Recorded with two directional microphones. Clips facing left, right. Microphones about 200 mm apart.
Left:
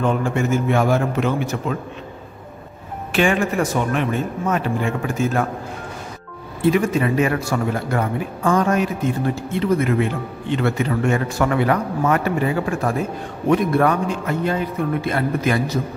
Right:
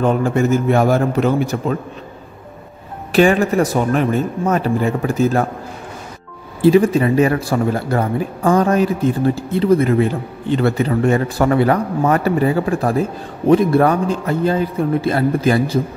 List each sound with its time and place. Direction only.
0.0 s a man's voice: 40° right (ahead or behind)
3.1 s a man's voice: 40° right (ahead or behind)
6.6 s a man's voice: 35° right (ahead or behind)